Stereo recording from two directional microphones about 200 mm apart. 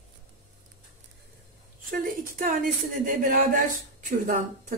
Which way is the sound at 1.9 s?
45° right (ahead or behind).